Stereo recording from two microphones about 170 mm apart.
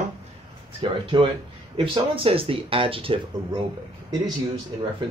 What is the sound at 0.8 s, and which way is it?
Speech, 30° right (ahead or behind).